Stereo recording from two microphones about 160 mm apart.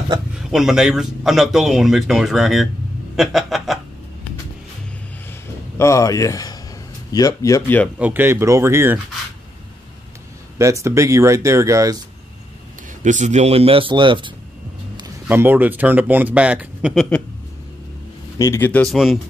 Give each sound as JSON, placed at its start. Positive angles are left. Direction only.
{"t": 0.5, "sound": "speech", "side_deg": -5}
{"t": 3.2, "sound": "a sound", "side_deg": 0}
{"t": 5.8, "sound": "speech", "side_deg": 20}
{"t": 8.0, "sound": "speech", "side_deg": -10}
{"t": 10.6, "sound": "speech", "side_deg": -20}
{"t": 13.0, "sound": "speech", "side_deg": -50}
{"t": 15.2, "sound": "speech", "side_deg": -10}
{"t": 18.4, "sound": "speech", "side_deg": 15}